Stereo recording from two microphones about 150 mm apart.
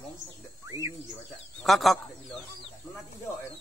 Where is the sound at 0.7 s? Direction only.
20° right (ahead or behind).